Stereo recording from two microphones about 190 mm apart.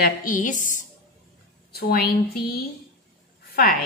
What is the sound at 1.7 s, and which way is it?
A woman's voice, 55° left (ahead or behind).